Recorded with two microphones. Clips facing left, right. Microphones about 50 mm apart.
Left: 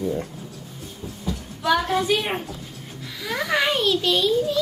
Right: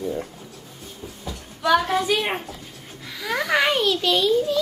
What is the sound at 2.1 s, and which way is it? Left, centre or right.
Speech, centre.